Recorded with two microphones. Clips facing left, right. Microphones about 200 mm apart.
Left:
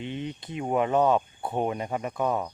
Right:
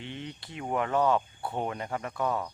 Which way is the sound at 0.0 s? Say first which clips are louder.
Left 6 dB; 20° left (ahead or behind).